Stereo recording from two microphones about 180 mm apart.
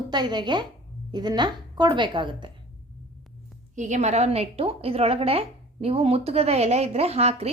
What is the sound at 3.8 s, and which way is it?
A woman's voice, 40° right (ahead or behind).